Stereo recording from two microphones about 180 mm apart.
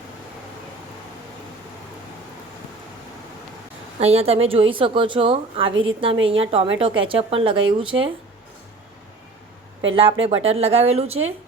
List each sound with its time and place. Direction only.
4.0 s a woman's voice: 35° right (ahead or behind)
9.9 s a woman's voice: 30° right (ahead or behind)